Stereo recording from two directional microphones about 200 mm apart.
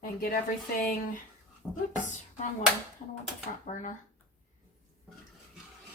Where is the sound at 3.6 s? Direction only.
35° left (ahead or behind).